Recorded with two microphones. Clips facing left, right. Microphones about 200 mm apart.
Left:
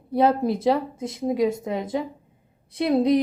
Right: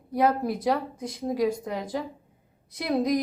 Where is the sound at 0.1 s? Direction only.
25° left (ahead or behind).